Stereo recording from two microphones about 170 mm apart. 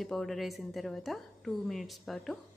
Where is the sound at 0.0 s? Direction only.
Centre (ahead or behind).